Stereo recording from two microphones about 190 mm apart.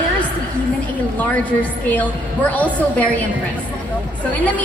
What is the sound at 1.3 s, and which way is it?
A woman's voice, 10° left (ahead or behind).